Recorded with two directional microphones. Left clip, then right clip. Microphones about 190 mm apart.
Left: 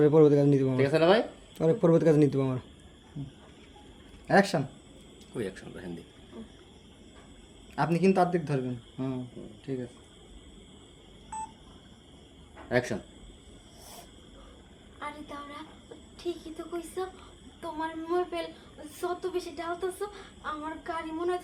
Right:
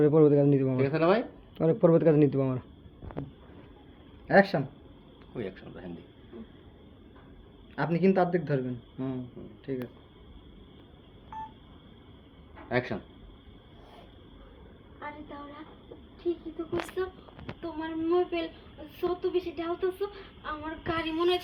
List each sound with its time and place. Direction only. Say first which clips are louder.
0.0 s speech: left 1 dB; 5° left (ahead or behind)
0.8 s speech: left 4 dB; 35° left (ahead or behind)
1.5 s speech: right 1 dB; centre (ahead or behind)
4.3 s speech: right 1 dB; 60° left (ahead or behind)
5.3 s speech: left 2 dB; 35° left (ahead or behind)
7.8 s speech: left 1 dB; 55° left (ahead or behind)
12.6 s speech: left 2 dB; 35° left (ahead or behind)
17.0 s a woman's voice: right 2 dB; 15° left (ahead or behind)